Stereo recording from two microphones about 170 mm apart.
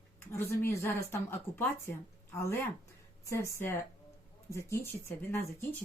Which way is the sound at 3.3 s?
15° left (ahead or behind).